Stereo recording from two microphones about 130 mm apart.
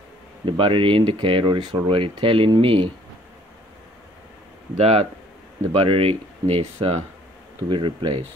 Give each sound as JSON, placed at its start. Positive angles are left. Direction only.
{"t": 0.5, "sound": "speech", "side_deg": -40}
{"t": 4.7, "sound": "speech", "side_deg": -55}
{"t": 7.7, "sound": "speech", "side_deg": -40}